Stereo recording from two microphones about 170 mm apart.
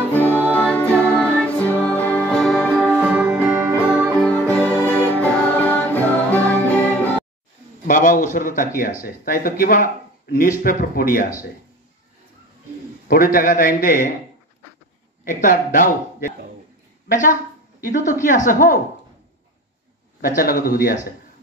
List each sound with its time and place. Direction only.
0.1 s music: 10° left (ahead or behind)
2.7 s music: 10° right (ahead or behind)
4.3 s music: 5° left (ahead or behind)
7.8 s a man's voice: 50° left (ahead or behind)
13.1 s a man's voice: 55° left (ahead or behind)
15.2 s speech: 50° left (ahead or behind)
20.2 s a man's voice: 55° left (ahead or behind)